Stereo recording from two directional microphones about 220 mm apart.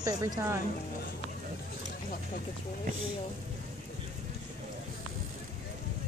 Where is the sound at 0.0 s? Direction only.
15° right (ahead or behind).